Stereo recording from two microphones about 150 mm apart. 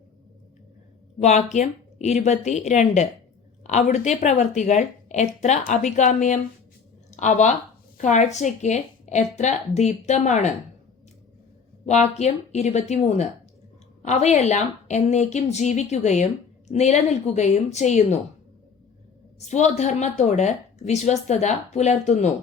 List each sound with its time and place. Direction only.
1.2 s speech: 50° left (ahead or behind)
11.9 s speech: 50° left (ahead or behind)
19.5 s speech: 50° left (ahead or behind)